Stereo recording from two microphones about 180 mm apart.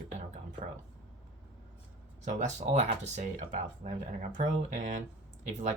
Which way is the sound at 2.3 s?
40° right (ahead or behind).